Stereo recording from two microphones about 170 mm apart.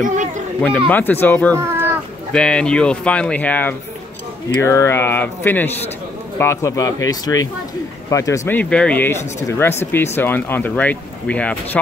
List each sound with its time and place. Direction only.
0.0 s speech: 50° right (ahead or behind)
0.8 s speech: 10° left (ahead or behind)